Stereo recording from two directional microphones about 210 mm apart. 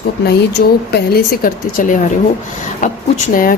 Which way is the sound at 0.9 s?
50° left (ahead or behind).